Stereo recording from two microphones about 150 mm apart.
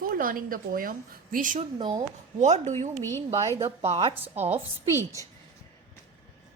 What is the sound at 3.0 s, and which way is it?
Speech, 15° left (ahead or behind).